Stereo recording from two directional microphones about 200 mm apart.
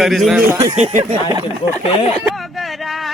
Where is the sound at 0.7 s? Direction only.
35° right (ahead or behind).